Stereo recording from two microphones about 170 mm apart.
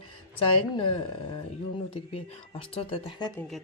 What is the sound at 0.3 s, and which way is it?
A woman's voice, 30° left (ahead or behind).